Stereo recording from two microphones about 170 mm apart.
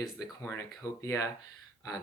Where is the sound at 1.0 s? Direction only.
20° left (ahead or behind).